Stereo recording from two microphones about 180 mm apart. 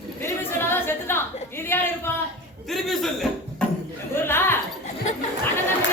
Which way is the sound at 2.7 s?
Centre (ahead or behind).